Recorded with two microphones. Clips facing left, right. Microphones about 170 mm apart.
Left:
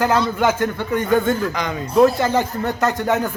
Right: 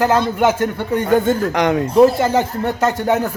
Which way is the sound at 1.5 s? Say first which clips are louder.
Right 9 dB; 70° right (ahead or behind).